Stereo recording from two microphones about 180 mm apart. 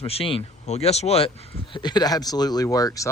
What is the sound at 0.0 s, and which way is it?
Speech, 30° left (ahead or behind).